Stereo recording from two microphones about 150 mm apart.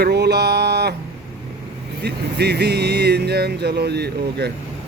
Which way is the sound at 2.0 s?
90° right.